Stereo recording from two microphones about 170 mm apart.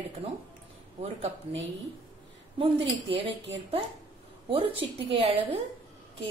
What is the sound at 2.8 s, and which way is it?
A woman's voice, 35° right (ahead or behind).